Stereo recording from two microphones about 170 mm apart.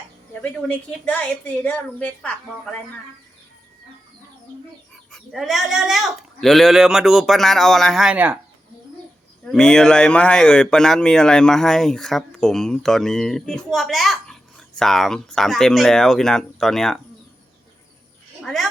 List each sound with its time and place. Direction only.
0.4 s a woman's voice: 10° left (ahead or behind)
5.1 s speech: centre (ahead or behind)
9.4 s speech: 5° left (ahead or behind)
18.4 s speech: centre (ahead or behind)